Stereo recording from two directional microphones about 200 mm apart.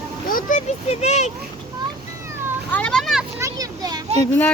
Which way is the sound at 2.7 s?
5° left (ahead or behind).